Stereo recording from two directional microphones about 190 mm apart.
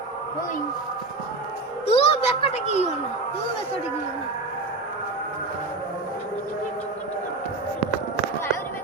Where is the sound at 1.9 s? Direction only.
30° left (ahead or behind).